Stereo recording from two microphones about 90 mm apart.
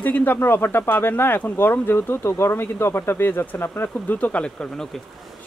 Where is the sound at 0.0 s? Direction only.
20° left (ahead or behind).